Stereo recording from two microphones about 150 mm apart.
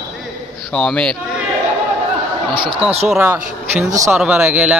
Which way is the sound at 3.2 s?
15° right (ahead or behind).